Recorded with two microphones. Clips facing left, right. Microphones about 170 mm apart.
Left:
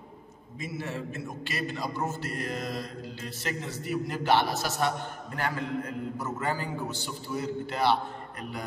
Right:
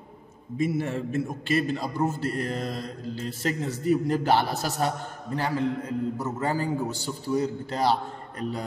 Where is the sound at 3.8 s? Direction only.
40° right (ahead or behind).